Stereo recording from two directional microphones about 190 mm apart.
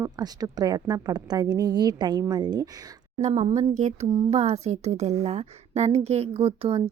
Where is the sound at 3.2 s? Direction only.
35° right (ahead or behind).